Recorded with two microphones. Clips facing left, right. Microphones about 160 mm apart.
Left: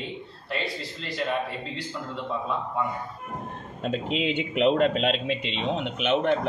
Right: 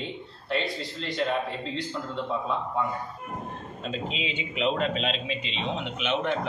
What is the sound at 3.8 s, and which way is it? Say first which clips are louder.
A man's voice: left 6 dB; 60° left (ahead or behind).